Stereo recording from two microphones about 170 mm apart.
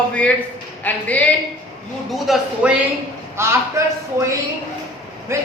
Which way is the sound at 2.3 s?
5° right (ahead or behind).